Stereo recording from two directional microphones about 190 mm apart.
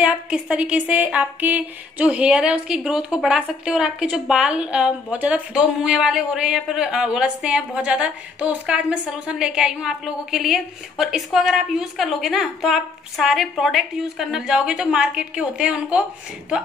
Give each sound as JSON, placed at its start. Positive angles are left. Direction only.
{"t": 0.0, "sound": "speech", "side_deg": -5}